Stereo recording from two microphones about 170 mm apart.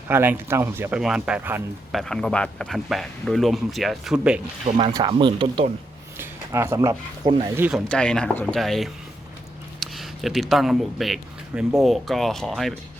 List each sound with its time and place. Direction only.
0.1 s speech: 15° right (ahead or behind)
1.9 s speech: centre (ahead or behind)
4.9 s speech: 25° right (ahead or behind)
6.1 s a sound: 15° right (ahead or behind)
7.4 s speech: 10° right (ahead or behind)
7.9 s speech: 5° left (ahead or behind)